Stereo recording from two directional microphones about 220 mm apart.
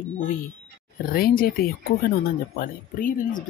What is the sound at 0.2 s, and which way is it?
Speech, 40° left (ahead or behind).